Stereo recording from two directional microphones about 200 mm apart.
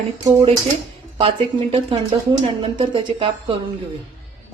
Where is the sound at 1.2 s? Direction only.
25° right (ahead or behind).